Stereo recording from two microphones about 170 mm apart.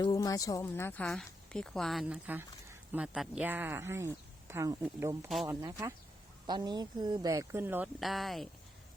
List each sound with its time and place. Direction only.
0.0 s speech: 20° left (ahead or behind); by 7.9 s 10° right (ahead or behind)
7.9 s speech: centre (ahead or behind)